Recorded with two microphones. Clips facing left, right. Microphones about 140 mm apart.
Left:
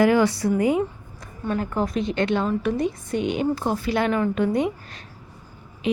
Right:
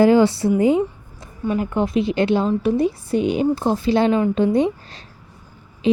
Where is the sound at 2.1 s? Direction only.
30° right (ahead or behind).